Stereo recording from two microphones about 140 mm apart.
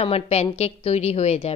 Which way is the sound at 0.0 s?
50° left (ahead or behind).